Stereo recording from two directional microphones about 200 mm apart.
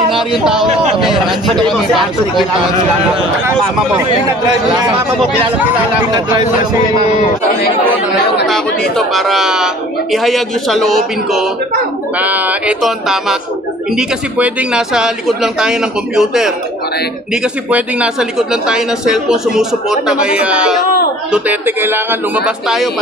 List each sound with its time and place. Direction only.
0.1 s speech: centre (ahead or behind)
3.4 s speech: 15° right (ahead or behind)
8.5 s speech: centre (ahead or behind)
17.6 s speech: 5° right (ahead or behind)